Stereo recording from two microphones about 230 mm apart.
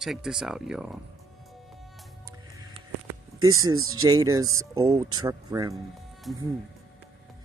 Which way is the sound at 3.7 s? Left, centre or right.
Right.